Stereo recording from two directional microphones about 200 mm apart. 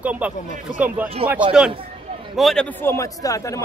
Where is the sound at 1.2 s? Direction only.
30° right (ahead or behind).